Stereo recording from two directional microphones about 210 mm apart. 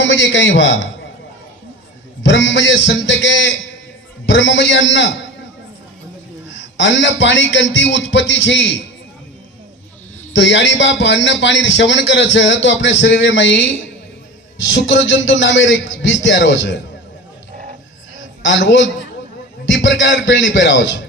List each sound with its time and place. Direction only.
0.0 s a man's voice: 60° left (ahead or behind)
2.2 s a man's voice: 60° left (ahead or behind)
6.5 s a man's voice: 60° left (ahead or behind)
10.3 s a man's voice: 60° left (ahead or behind)
18.4 s a man's voice: 60° left (ahead or behind)